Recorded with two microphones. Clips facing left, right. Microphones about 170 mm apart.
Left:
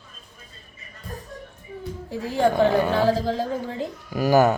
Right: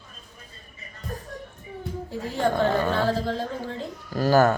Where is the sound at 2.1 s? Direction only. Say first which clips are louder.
Left 4 dB; 15° left (ahead or behind).